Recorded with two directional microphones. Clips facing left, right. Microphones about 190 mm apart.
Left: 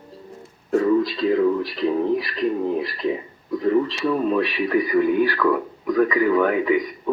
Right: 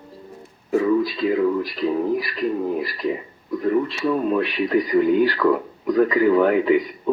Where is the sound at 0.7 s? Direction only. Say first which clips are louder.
Even; 5° right (ahead or behind).